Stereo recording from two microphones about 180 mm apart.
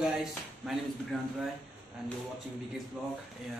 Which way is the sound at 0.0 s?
Centre (ahead or behind).